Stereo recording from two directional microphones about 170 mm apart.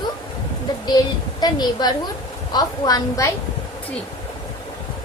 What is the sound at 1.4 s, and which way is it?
A woman's voice, 25° left (ahead or behind).